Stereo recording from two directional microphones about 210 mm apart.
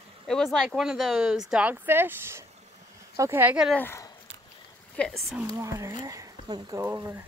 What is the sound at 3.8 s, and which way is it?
Speech, 10° left (ahead or behind).